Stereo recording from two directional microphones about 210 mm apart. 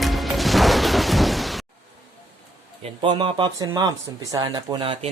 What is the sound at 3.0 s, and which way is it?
Speech, 25° right (ahead or behind).